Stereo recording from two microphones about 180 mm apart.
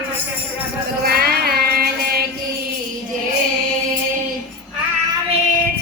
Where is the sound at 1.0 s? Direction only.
60° right (ahead or behind).